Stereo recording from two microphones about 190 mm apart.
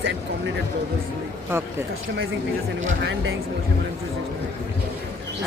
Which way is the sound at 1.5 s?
15° right (ahead or behind).